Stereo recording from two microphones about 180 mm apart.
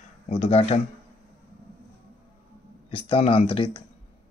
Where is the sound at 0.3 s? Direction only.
35° left (ahead or behind).